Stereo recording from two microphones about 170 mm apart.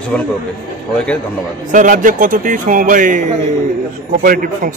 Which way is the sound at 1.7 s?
50° right (ahead or behind).